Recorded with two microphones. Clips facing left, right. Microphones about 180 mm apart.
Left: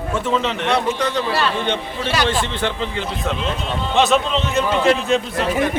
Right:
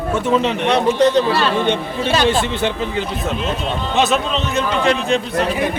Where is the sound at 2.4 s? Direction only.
10° right (ahead or behind).